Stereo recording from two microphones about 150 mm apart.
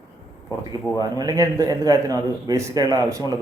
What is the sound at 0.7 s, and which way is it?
A man's voice, 25° right (ahead or behind).